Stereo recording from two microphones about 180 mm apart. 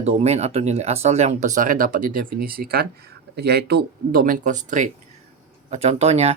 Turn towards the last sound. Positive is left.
turn(degrees=-35)  # may be behind; listen again after turning